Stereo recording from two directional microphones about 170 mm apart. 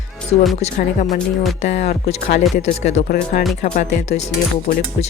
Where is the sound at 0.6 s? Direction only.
45° left (ahead or behind).